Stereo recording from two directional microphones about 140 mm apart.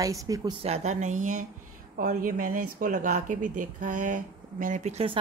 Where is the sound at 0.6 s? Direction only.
50° right (ahead or behind).